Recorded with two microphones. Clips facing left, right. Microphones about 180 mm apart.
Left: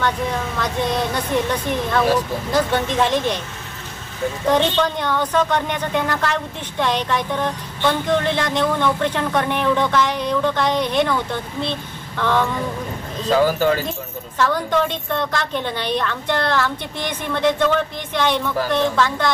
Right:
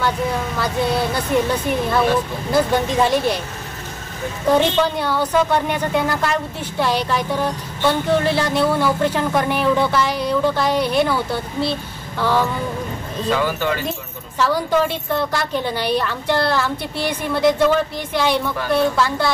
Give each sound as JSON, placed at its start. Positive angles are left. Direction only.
{"t": 0.6, "sound": "a woman's voice", "side_deg": -10}
{"t": 4.5, "sound": "a woman's voice", "side_deg": -10}
{"t": 13.3, "sound": "speech", "side_deg": 40}
{"t": 14.4, "sound": "a woman's voice", "side_deg": -10}